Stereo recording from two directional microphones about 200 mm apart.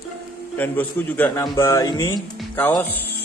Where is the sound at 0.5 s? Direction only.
10° left (ahead or behind).